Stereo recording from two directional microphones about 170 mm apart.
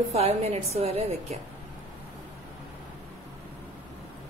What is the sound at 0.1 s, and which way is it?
A woman's voice, 40° right (ahead or behind).